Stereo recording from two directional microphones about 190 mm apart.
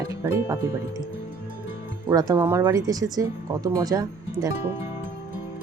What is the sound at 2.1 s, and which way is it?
Speech, 20° right (ahead or behind).